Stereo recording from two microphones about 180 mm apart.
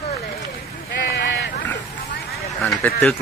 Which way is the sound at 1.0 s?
75° left (ahead or behind).